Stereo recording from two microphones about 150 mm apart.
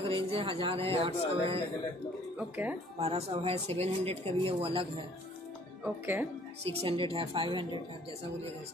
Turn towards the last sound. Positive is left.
turn(degrees=-35)  # may be behind; listen again after turning